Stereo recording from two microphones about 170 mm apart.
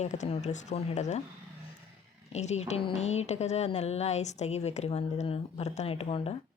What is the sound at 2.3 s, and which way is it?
A woman's voice, 40° left (ahead or behind).